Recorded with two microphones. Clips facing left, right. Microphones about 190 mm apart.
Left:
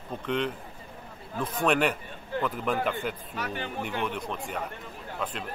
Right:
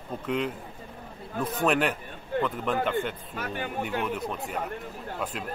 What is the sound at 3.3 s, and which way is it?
Speech, 50° right (ahead or behind).